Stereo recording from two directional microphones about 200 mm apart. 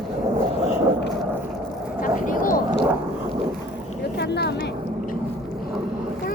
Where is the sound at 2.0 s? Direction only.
40° left (ahead or behind).